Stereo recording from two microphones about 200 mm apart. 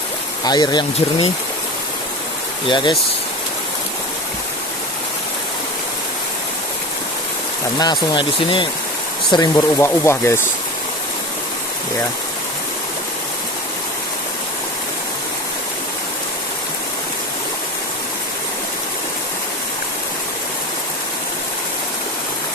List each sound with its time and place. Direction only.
0.4 s speech: 20° left (ahead or behind)
2.6 s speech: 25° left (ahead or behind)
7.8 s speech: 20° left (ahead or behind)